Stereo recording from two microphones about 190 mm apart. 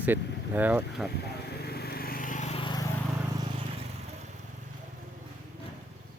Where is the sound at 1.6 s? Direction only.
55° left (ahead or behind); by 2.8 s 25° left (ahead or behind).